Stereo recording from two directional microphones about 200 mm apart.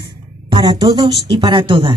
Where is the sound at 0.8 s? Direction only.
25° right (ahead or behind).